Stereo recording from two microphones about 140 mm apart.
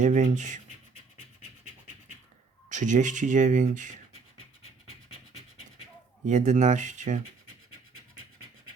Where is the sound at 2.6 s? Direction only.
65° right (ahead or behind).